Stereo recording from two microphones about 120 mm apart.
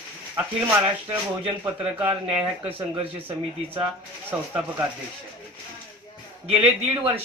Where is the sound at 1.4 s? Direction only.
50° right (ahead or behind).